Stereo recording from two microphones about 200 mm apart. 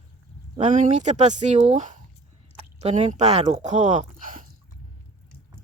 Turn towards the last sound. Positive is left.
turn(degrees=-40)  # may be behind; listen again after turning